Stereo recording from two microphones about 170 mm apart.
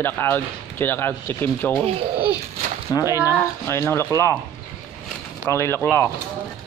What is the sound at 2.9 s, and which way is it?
Speech, 20° left (ahead or behind).